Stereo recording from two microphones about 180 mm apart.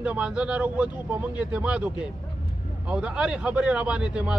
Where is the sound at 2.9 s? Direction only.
5° right (ahead or behind).